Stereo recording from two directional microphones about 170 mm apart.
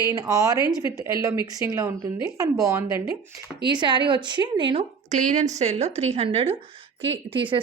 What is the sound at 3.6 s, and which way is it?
A woman's voice, 25° right (ahead or behind).